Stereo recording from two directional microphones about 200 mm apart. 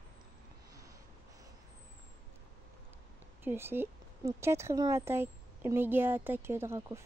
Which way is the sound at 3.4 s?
10° right (ahead or behind).